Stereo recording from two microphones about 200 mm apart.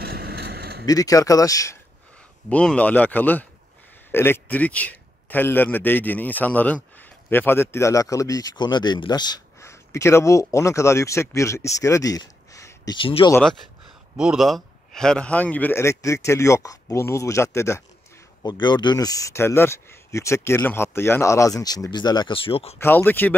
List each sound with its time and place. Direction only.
0.0 s a sound: 55° right (ahead or behind)
0.8 s speech: 15° left (ahead or behind)
2.5 s a man's voice: 5° left (ahead or behind); by 13.3 s 25° left (ahead or behind)
13.3 s speech: 5° left (ahead or behind); by 22.8 s 30° left (ahead or behind)
22.8 s speech: 10° left (ahead or behind)